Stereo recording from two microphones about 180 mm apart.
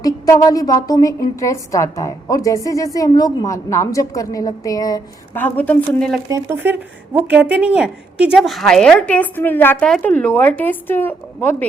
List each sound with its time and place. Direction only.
0.0 s a woman's voice: 20° left (ahead or behind)
6.2 s a woman's voice: 15° right (ahead or behind); by 11.5 s 10° left (ahead or behind)